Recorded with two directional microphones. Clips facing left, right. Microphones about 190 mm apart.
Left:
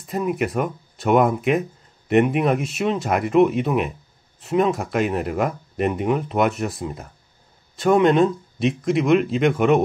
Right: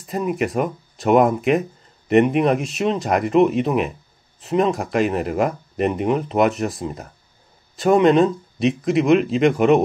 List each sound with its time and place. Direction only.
0.0 s speech: centre (ahead or behind)